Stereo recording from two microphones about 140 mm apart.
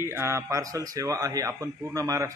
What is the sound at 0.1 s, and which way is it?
A man's voice, 20° right (ahead or behind).